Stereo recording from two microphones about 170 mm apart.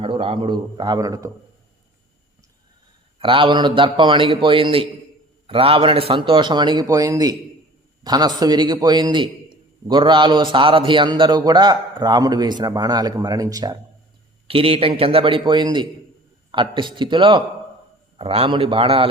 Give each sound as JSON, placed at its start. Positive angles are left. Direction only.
{"t": 0.0, "sound": "a man's voice", "side_deg": -30}
{"t": 3.2, "sound": "a man's voice", "side_deg": -30}
{"t": 14.4, "sound": "a man's voice", "side_deg": -35}